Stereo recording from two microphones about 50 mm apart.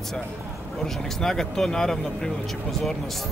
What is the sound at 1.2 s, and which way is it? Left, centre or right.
Speech, centre.